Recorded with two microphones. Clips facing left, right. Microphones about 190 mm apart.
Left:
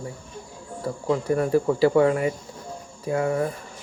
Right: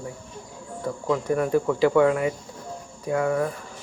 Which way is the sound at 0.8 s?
35° left (ahead or behind).